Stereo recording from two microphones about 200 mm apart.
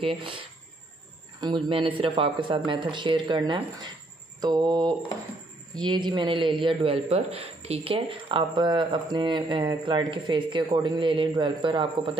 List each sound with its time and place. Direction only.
0.0 s a man's voice: 25° right (ahead or behind)
1.4 s a man's voice: 25° right (ahead or behind)